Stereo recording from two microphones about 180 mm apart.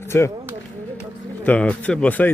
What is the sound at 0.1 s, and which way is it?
Speech, 10° left (ahead or behind).